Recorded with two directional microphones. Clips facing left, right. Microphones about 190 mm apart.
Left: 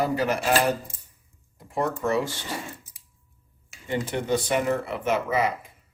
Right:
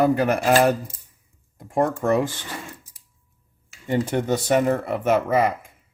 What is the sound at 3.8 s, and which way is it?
Speech, 45° right (ahead or behind).